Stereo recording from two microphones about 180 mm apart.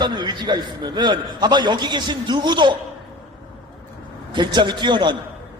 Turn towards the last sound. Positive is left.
turn(degrees=-25)  # may be behind; listen again after turning